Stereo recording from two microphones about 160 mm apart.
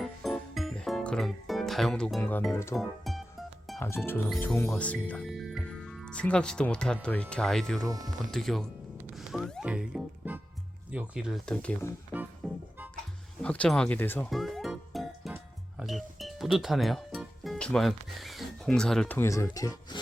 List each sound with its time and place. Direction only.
0.0 s music: centre (ahead or behind)
3.8 s speech: 15° left (ahead or behind)
7.9 s speech: 25° right (ahead or behind)
8.3 s speech: centre (ahead or behind)
9.1 s music: centre (ahead or behind)
10.9 s speech: 5° right (ahead or behind)
12.4 s music: centre (ahead or behind)
13.4 s speech: 5° left (ahead or behind)
14.3 s music: centre (ahead or behind)
15.8 s speech: centre (ahead or behind); by 20.0 s 20° left (ahead or behind)